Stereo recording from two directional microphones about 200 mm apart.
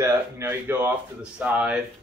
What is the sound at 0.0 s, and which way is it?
Speech, 10° right (ahead or behind).